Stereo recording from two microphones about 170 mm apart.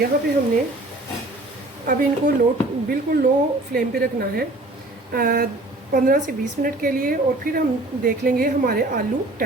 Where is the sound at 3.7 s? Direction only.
60° right (ahead or behind).